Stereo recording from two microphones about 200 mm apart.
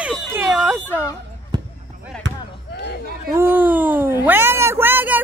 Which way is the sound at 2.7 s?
55° left (ahead or behind).